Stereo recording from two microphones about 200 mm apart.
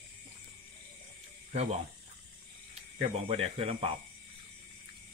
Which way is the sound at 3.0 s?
30° right (ahead or behind).